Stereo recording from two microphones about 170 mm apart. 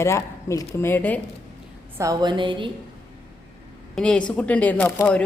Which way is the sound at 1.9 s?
20° right (ahead or behind).